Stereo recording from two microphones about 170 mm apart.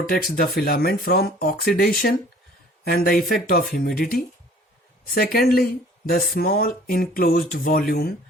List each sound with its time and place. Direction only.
0.0 s speech: 60° left (ahead or behind)